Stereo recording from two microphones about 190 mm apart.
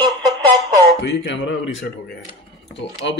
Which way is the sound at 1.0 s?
65° left (ahead or behind).